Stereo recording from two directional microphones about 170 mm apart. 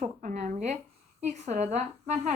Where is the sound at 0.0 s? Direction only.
50° right (ahead or behind).